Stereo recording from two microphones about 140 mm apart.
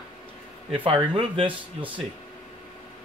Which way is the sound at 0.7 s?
40° right (ahead or behind).